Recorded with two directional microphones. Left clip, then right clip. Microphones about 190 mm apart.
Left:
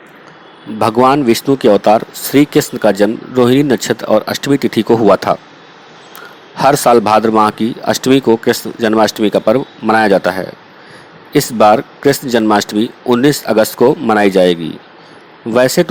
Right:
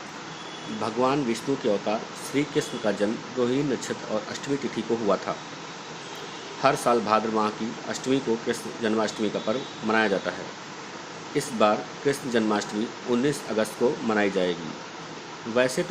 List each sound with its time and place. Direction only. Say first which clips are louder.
0.8 s speech: left 15 dB; 55° left (ahead or behind)
6.6 s speech: left 13 dB; 50° left (ahead or behind)
11.3 s speech: left 14 dB; 50° left (ahead or behind)